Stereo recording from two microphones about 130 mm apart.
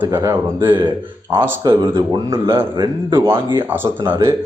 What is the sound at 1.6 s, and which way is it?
Speech, 30° right (ahead or behind).